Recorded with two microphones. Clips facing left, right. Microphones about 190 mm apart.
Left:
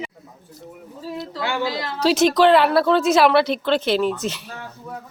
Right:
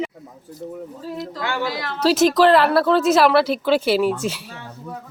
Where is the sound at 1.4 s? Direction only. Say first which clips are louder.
Left 1 dB; 15° left (ahead or behind).